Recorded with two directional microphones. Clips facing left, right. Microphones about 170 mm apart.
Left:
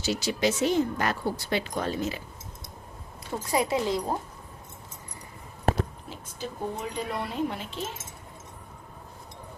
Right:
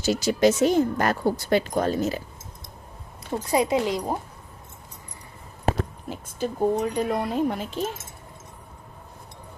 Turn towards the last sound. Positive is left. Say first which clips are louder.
# right 6 dB
turn(degrees=-45)  # may be behind; listen again after turning